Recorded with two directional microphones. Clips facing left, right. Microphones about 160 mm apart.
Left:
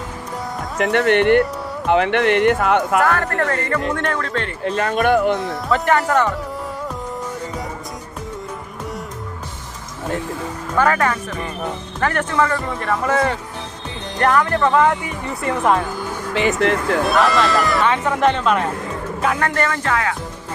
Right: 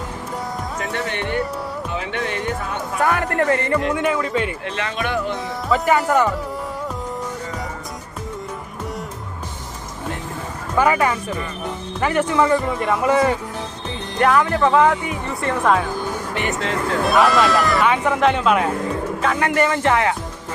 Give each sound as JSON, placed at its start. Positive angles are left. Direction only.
{"t": 0.8, "sound": "speech", "side_deg": 70}
{"t": 3.0, "sound": "speech", "side_deg": -15}
{"t": 4.6, "sound": "speech", "side_deg": 40}
{"t": 5.4, "sound": "speech", "side_deg": 0}
{"t": 10.8, "sound": "speech", "side_deg": -10}
{"t": 15.4, "sound": "speech", "side_deg": 5}
{"t": 16.3, "sound": "speech", "side_deg": 90}
{"t": 17.0, "sound": "speech", "side_deg": 0}